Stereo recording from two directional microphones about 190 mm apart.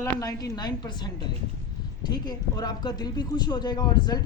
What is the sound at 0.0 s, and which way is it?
Speech, 20° left (ahead or behind).